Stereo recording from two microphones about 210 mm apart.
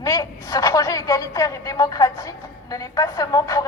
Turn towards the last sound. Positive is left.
turn(degrees=15)  # may be behind; listen again after turning